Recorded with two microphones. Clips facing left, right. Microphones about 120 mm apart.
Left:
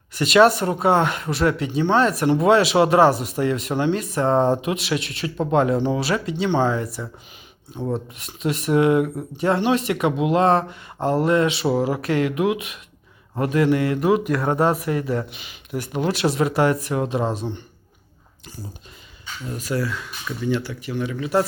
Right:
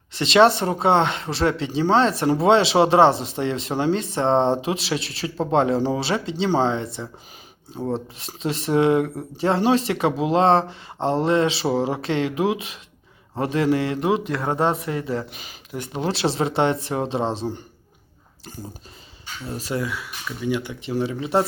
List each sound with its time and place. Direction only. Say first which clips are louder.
0.1 s speech: left 1 dB; 25° right (ahead or behind)
15.3 s speech: left 4 dB; 40° right (ahead or behind)
15.8 s speech: left 2 dB; 30° right (ahead or behind)
19.5 s speech: left 1 dB; 30° right (ahead or behind)
19.9 s speech: left 1 dB; 10° right (ahead or behind)
20.9 s speech: even; 30° right (ahead or behind)